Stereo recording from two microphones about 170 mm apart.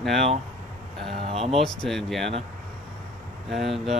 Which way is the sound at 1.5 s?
5° left (ahead or behind).